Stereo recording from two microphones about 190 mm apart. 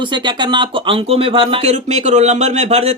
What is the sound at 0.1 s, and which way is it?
Speech, 25° right (ahead or behind).